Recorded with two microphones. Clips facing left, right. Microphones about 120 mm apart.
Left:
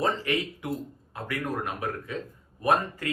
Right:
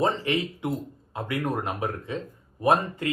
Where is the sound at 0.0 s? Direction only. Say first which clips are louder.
Right 2 dB; 25° right (ahead or behind).